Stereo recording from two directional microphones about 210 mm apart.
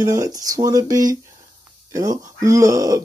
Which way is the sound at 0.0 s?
15° right (ahead or behind).